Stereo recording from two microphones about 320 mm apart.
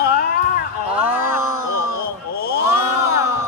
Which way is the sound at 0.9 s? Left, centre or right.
Centre.